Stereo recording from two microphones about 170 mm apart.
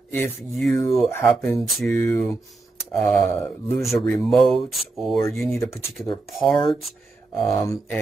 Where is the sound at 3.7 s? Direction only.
15° left (ahead or behind).